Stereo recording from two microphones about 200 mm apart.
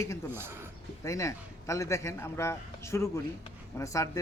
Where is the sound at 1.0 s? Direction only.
15° left (ahead or behind).